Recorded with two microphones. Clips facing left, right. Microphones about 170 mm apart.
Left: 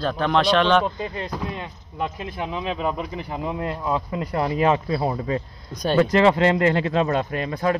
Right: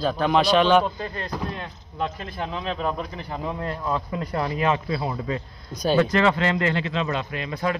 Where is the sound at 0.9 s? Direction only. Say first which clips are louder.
Left 2 dB; 15° left (ahead or behind).